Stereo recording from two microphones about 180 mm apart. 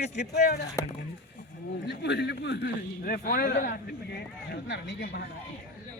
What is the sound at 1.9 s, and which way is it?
Speech, 70° left (ahead or behind).